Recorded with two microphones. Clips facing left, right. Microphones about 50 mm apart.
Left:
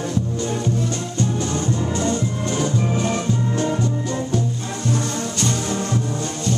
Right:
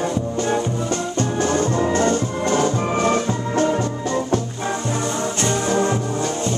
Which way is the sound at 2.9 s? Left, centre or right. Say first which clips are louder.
Right 3 dB; right.